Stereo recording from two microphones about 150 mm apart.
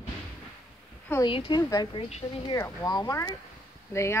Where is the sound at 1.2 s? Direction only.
30° left (ahead or behind).